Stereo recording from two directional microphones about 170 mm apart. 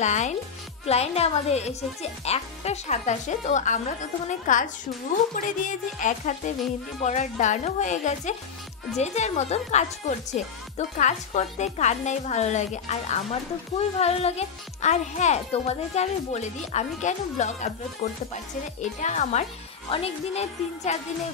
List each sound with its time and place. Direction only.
0.0 s speech: 45° left (ahead or behind)